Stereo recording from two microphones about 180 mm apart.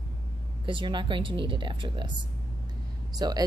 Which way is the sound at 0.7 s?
25° right (ahead or behind).